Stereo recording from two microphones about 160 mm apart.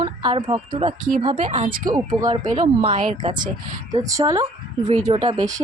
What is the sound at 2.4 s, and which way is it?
Speech, 50° right (ahead or behind).